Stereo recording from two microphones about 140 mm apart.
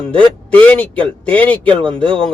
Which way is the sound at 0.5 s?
10° left (ahead or behind).